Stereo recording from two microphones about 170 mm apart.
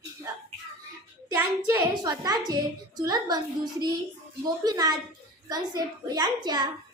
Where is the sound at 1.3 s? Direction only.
20° right (ahead or behind).